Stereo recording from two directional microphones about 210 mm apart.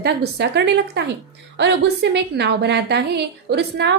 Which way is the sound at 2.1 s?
55° right (ahead or behind).